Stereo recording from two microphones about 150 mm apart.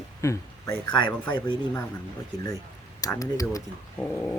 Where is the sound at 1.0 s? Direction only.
30° left (ahead or behind).